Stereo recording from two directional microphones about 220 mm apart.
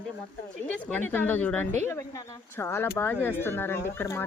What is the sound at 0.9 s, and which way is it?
Speech, 10° left (ahead or behind).